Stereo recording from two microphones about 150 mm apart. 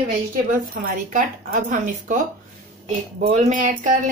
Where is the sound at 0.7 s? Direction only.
70° right (ahead or behind).